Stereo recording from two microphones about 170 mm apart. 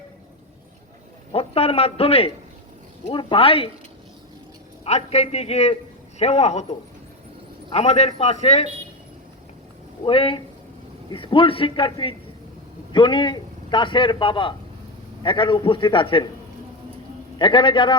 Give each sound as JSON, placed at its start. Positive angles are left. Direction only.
{"t": 1.3, "sound": "a man's voice", "side_deg": 35}
{"t": 4.9, "sound": "a man's voice", "side_deg": 40}
{"t": 10.0, "sound": "a man's voice", "side_deg": 30}
{"t": 17.3, "sound": "a man's voice", "side_deg": 30}